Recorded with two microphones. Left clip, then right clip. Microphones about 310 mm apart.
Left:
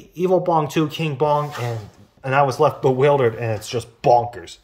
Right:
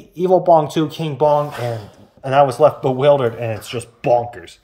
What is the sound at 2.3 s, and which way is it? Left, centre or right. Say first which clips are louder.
Speech: right 4 dB; left.